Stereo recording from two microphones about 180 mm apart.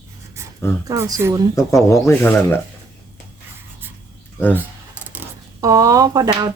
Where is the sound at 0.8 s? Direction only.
20° right (ahead or behind).